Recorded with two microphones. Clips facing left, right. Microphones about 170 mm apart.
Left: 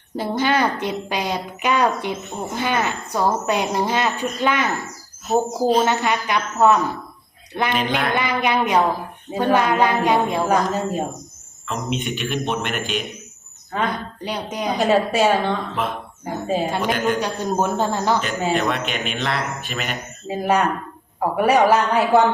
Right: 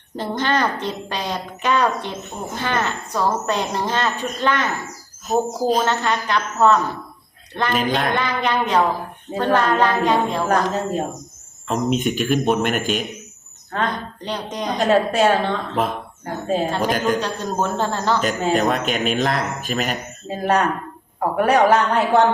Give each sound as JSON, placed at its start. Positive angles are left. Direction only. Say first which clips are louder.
{"t": 0.2, "sound": "a man's voice", "louder": "left 1 dB", "side_deg": 10}
{"t": 7.9, "sound": "speech", "louder": "right 2 dB", "side_deg": -40}
{"t": 8.1, "sound": "speech", "louder": "left 1 dB", "side_deg": 10}
{"t": 11.7, "sound": "speech", "louder": "right 5 dB", "side_deg": -45}
{"t": 13.7, "sound": "speech", "louder": "even", "side_deg": 10}
{"t": 16.8, "sound": "speech", "louder": "right 1 dB", "side_deg": -40}
{"t": 17.2, "sound": "speech", "louder": "left 1 dB", "side_deg": 10}
{"t": 18.5, "sound": "speech", "louder": "right 3 dB", "side_deg": -40}
{"t": 20.2, "sound": "a man's voice", "louder": "even", "side_deg": 5}